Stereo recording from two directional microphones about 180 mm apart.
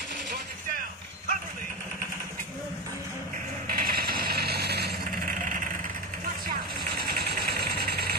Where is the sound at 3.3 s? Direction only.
55° right (ahead or behind).